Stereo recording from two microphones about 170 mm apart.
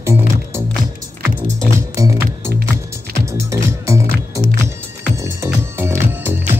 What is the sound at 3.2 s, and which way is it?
Music, 15° right (ahead or behind).